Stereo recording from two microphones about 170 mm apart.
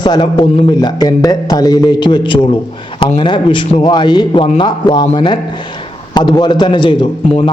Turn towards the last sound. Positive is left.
turn(degrees=30)  # may be behind; listen again after turning